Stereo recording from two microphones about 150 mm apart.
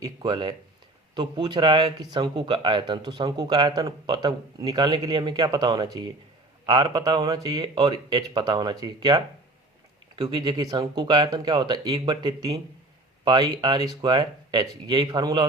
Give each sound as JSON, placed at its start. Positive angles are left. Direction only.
{"t": 0.0, "sound": "speech", "side_deg": -30}